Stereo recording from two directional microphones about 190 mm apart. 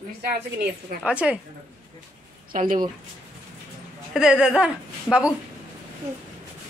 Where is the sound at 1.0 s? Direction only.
5° right (ahead or behind).